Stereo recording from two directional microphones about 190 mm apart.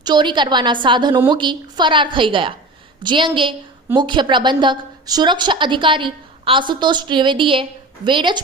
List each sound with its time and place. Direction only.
0.0 s a woman's voice: 25° right (ahead or behind)